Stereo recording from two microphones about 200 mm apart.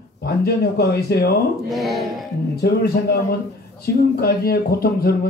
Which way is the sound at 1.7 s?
Centre (ahead or behind).